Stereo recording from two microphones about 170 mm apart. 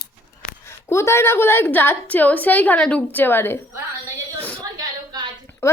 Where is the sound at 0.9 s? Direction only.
15° left (ahead or behind).